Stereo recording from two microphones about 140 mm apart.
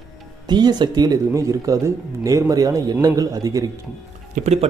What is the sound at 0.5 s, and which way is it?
A man's voice, 30° right (ahead or behind).